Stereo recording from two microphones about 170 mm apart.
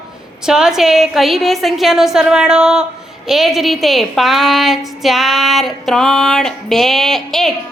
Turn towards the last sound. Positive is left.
turn(degrees=0)  # may be behind; listen again after turning